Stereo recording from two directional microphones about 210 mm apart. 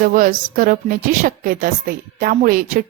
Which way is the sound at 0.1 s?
40° right (ahead or behind).